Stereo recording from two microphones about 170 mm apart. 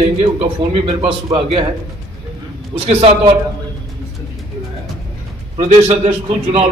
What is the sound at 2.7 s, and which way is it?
Speech, 35° right (ahead or behind).